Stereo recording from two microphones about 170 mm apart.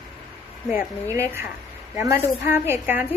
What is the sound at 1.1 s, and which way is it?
A woman's voice, 15° right (ahead or behind).